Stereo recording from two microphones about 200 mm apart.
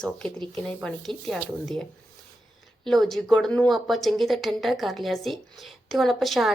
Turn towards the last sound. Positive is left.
turn(degrees=0)  # may be behind; listen again after turning